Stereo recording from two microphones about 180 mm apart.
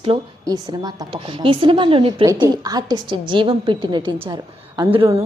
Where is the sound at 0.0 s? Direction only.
25° right (ahead or behind).